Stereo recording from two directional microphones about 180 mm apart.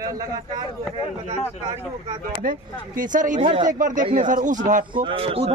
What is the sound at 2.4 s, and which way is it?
Speech, 50° right (ahead or behind).